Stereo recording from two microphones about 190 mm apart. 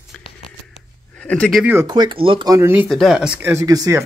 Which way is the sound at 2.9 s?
Centre (ahead or behind).